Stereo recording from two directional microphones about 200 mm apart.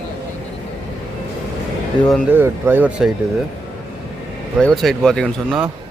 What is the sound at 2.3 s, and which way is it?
Speech, 10° right (ahead or behind).